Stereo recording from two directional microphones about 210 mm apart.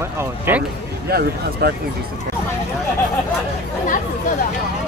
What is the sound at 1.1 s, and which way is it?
Speech, 50° right (ahead or behind).